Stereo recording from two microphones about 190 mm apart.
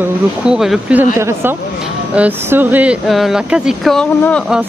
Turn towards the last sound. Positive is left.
turn(degrees=0)  # may be behind; listen again after turning